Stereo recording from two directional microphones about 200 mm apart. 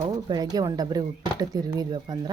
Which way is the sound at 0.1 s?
20° right (ahead or behind).